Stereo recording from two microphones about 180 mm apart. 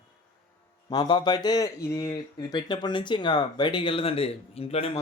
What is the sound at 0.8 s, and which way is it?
Speech, 25° left (ahead or behind).